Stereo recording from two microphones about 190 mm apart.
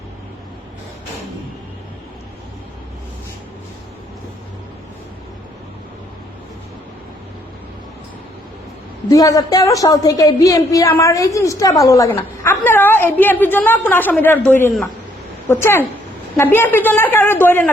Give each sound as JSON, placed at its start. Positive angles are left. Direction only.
{"t": 9.0, "sound": "a woman's voice", "side_deg": 20}